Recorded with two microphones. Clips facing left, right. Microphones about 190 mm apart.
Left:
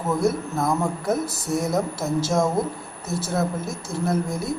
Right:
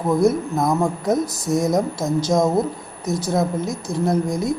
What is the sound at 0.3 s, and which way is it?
A man's voice, 15° right (ahead or behind).